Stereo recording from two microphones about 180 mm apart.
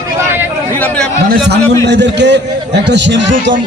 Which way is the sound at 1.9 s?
75° right (ahead or behind).